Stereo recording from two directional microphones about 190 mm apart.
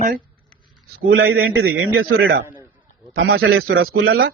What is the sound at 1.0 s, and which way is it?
A man's voice, 90° right.